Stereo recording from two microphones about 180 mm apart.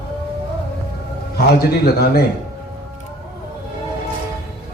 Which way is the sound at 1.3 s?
60° left (ahead or behind).